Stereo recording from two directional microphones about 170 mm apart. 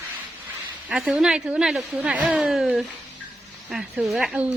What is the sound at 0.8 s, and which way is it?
A woman's voice, 5° right (ahead or behind).